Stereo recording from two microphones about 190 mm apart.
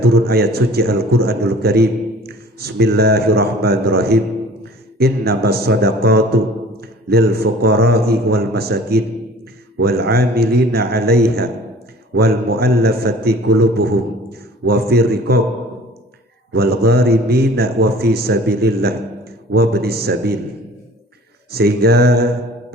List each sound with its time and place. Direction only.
0.0 s speech: 55° right (ahead or behind)
16.5 s speech: 55° right (ahead or behind)
21.5 s speech: 55° right (ahead or behind)